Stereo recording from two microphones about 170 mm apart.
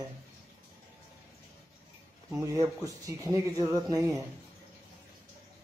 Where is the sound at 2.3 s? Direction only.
20° right (ahead or behind).